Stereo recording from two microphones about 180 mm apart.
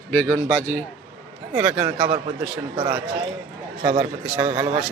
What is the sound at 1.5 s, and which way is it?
Speech, 5° right (ahead or behind).